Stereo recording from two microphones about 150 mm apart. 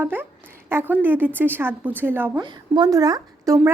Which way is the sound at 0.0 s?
15° right (ahead or behind).